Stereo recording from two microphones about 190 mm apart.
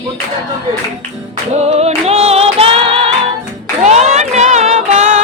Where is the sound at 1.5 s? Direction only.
35° right (ahead or behind).